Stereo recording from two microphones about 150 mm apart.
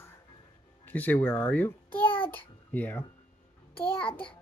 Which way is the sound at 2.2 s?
10° left (ahead or behind).